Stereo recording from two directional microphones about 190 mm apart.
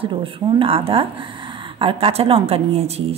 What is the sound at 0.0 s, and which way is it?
A woman's voice, 25° right (ahead or behind).